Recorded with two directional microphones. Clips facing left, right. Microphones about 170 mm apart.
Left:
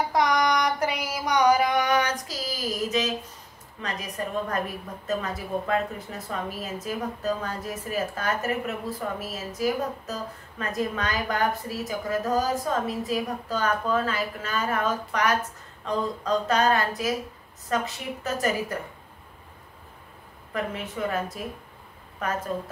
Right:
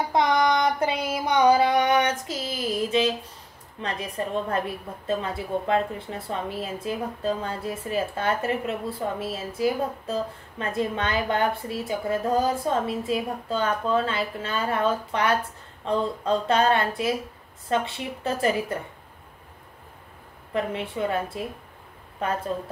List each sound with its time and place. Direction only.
0.1 s female singing: 25° right (ahead or behind)
3.8 s a woman's voice: 30° right (ahead or behind)
20.5 s a woman's voice: 30° right (ahead or behind)